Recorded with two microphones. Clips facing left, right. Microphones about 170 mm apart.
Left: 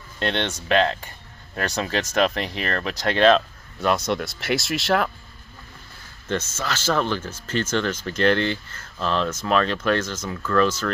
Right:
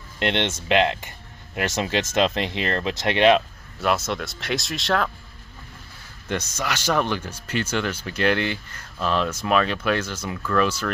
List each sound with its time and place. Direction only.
0.2 s speech: 25° right (ahead or behind)
3.8 s speech: 5° right (ahead or behind)
6.2 s speech: 15° right (ahead or behind)